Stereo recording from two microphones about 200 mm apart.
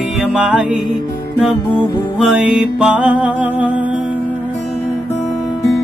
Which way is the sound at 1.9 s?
5° right (ahead or behind).